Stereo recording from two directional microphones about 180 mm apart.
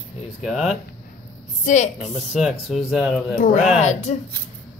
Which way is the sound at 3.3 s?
50° left (ahead or behind).